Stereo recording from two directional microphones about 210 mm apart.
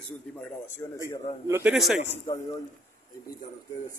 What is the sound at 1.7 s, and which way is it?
Speech, centre (ahead or behind).